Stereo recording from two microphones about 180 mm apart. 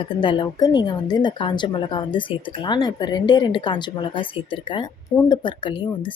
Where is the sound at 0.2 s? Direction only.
25° left (ahead or behind).